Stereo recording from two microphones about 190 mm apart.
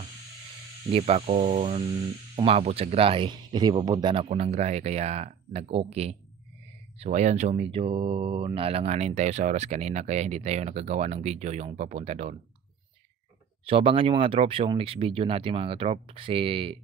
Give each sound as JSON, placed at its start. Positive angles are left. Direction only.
{"t": 0.9, "sound": "speech", "side_deg": -35}
{"t": 13.7, "sound": "speech", "side_deg": -30}